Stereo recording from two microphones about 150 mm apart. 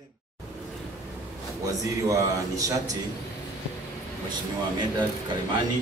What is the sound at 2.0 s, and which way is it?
Speech, 20° right (ahead or behind).